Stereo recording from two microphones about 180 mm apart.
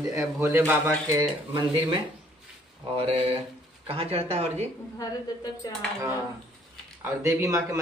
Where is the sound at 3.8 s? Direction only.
30° right (ahead or behind).